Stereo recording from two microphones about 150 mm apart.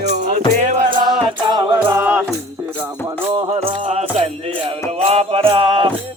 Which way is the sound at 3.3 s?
35° right (ahead or behind).